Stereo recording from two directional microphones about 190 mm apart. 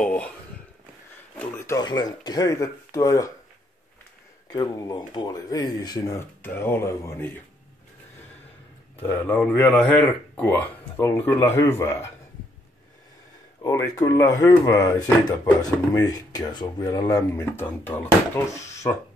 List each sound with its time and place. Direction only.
0.0 s speech: 5° left (ahead or behind)
1.4 s speech: 15° left (ahead or behind)
4.5 s speech: 20° left (ahead or behind)
8.9 s speech: 10° left (ahead or behind)
13.6 s speech: 15° left (ahead or behind)